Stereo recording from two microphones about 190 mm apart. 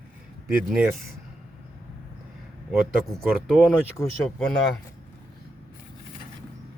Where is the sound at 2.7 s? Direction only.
Centre (ahead or behind).